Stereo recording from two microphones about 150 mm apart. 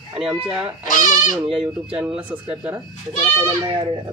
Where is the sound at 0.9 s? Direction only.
55° left (ahead or behind).